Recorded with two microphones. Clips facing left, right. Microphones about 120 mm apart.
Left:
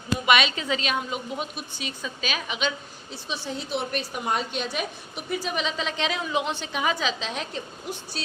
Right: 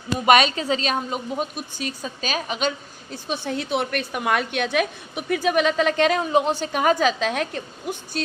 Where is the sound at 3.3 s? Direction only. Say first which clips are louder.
Right 5 dB; 60° right (ahead or behind).